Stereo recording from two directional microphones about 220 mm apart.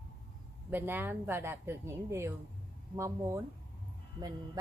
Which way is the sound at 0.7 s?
10° right (ahead or behind).